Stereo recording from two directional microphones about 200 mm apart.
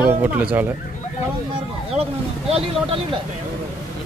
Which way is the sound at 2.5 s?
30° right (ahead or behind).